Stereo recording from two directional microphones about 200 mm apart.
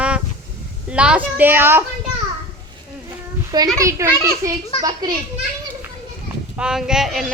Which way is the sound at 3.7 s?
15° right (ahead or behind).